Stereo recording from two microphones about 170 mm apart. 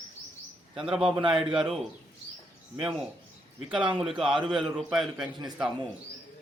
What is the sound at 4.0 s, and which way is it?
A man's voice, centre (ahead or behind).